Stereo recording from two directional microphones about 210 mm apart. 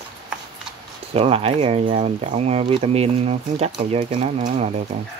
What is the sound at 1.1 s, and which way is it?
Speech, 30° right (ahead or behind).